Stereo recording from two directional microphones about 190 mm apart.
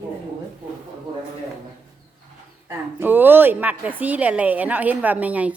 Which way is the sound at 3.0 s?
10° right (ahead or behind).